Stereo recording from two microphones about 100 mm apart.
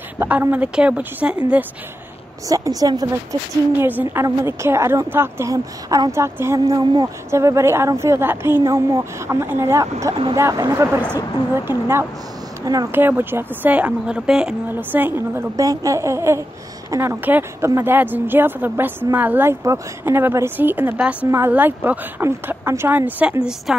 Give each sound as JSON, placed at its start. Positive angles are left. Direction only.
{"t": 0.2, "sound": "speech", "side_deg": -20}
{"t": 2.4, "sound": "speech", "side_deg": -35}
{"t": 3.7, "sound": "speech", "side_deg": -20}
{"t": 5.5, "sound": "speech", "side_deg": -35}
{"t": 6.1, "sound": "speech", "side_deg": -25}
{"t": 6.8, "sound": "speech", "side_deg": -45}
{"t": 7.2, "sound": "speech", "side_deg": -30}
{"t": 14.7, "sound": "speech", "side_deg": -20}
{"t": 15.5, "sound": "speech", "side_deg": -35}
{"t": 23.7, "sound": "a woman's voice", "side_deg": -5}